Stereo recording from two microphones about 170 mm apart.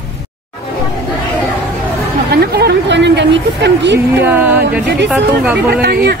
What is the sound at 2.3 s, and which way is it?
A woman's voice, 70° right (ahead or behind).